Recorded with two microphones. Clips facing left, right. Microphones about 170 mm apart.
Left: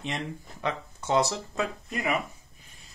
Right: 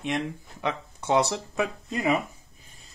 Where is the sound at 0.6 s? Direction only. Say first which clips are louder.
Right 2 dB; 15° right (ahead or behind).